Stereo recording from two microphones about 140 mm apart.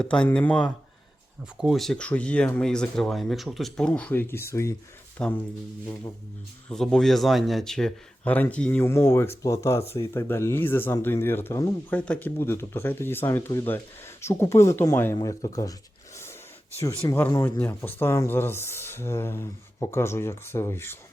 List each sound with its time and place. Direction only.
0.0 s speech: 5° left (ahead or behind)
6.7 s speech: 5° left (ahead or behind); by 15.7 s 25° left (ahead or behind)
17.1 s speech: 20° left (ahead or behind)